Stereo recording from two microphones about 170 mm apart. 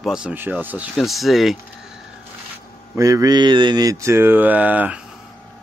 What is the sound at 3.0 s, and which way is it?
Speech, 20° right (ahead or behind).